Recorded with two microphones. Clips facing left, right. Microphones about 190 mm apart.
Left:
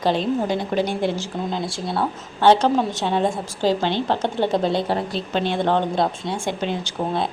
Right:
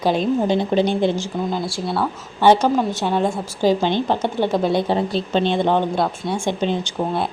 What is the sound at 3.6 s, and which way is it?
Speech, 15° right (ahead or behind).